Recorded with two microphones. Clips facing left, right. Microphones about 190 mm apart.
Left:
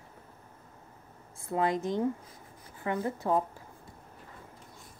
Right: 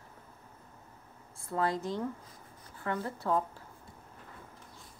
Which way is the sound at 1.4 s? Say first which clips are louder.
Left 3 dB; 20° left (ahead or behind).